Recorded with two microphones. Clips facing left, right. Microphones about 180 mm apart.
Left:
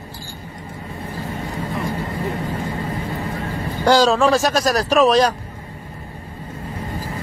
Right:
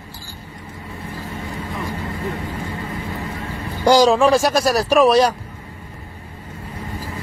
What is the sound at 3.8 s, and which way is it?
Speech, 15° right (ahead or behind).